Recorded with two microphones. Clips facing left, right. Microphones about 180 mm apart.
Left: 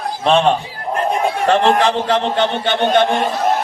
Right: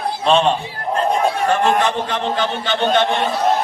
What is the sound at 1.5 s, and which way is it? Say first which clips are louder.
A man's voice: left 6 dB; 70° left (ahead or behind).